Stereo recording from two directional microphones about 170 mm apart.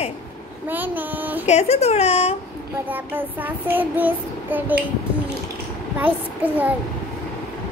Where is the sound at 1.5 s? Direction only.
40° left (ahead or behind).